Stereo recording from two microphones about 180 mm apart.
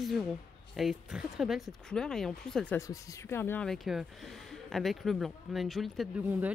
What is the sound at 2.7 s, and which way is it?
Speech, 15° left (ahead or behind).